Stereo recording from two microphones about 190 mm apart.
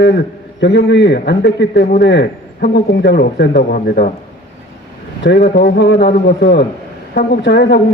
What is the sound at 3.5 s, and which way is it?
Speech, 45° left (ahead or behind).